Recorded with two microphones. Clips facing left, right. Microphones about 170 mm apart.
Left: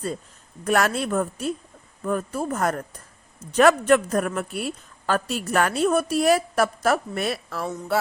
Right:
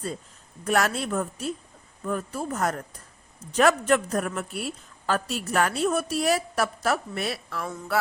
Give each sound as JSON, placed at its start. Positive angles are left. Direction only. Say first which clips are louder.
{"t": 0.6, "sound": "a man's voice", "louder": "left 3 dB", "side_deg": 60}
{"t": 7.6, "sound": "speech", "louder": "left 6 dB", "side_deg": 25}